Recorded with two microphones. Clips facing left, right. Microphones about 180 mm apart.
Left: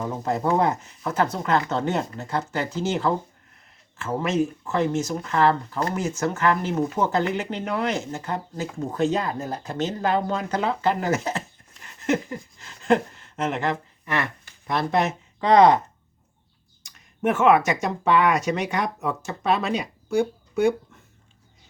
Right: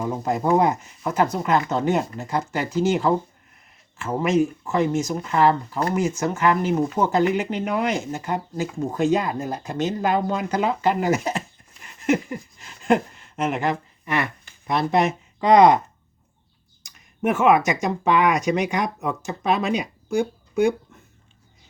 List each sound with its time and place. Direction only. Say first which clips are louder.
0.0 s speech: right 2 dB; 10° right (ahead or behind)
17.2 s speech: even; 10° right (ahead or behind)